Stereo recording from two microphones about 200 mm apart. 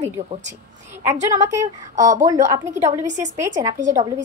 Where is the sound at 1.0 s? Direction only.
15° right (ahead or behind).